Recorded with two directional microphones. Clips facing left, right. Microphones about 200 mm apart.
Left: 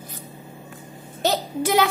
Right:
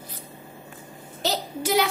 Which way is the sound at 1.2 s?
55° left (ahead or behind).